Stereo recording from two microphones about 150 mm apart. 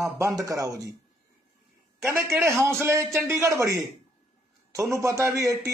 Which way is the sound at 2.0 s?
15° right (ahead or behind).